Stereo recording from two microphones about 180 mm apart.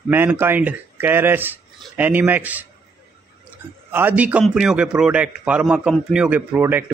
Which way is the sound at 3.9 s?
10° right (ahead or behind).